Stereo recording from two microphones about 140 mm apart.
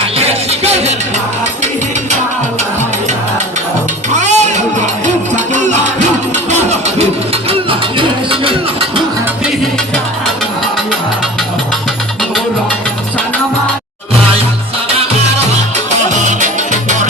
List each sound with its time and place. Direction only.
0.2 s music: 50° right (ahead or behind)
4.1 s music: 55° right (ahead or behind)
6.5 s a sound: 50° right (ahead or behind)
7.7 s music: 40° right (ahead or behind)